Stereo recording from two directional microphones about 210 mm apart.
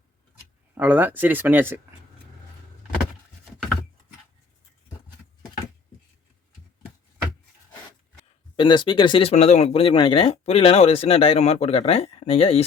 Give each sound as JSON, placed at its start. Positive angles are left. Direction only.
{"t": 0.8, "sound": "speech", "side_deg": -10}
{"t": 8.5, "sound": "speech", "side_deg": 20}